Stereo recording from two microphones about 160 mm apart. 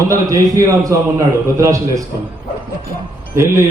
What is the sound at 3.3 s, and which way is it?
Speech, 15° right (ahead or behind).